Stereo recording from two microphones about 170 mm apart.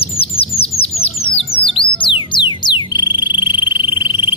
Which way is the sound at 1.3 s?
35° left (ahead or behind).